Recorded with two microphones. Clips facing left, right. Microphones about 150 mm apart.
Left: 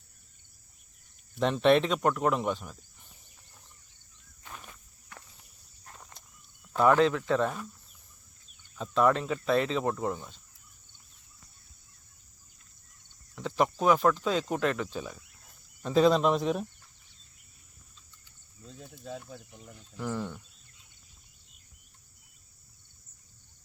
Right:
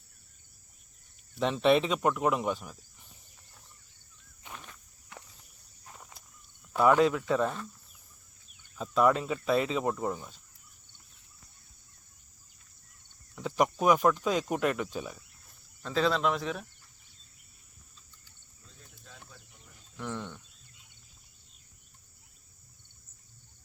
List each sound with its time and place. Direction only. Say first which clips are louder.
1.4 s speech: left 2 dB; centre (ahead or behind)
4.5 s walk: even; 10° left (ahead or behind)
5.1 s walk: right 1 dB; 20° right (ahead or behind)
5.8 s walk: even; 5° right (ahead or behind)
6.7 s speech: even; 10° right (ahead or behind)
8.7 s speech: even; 5° right (ahead or behind)
13.3 s speech: even; 5° right (ahead or behind)
15.8 s speech: left 5 dB; 15° left (ahead or behind)
20.0 s speech: left 4 dB; 5° left (ahead or behind)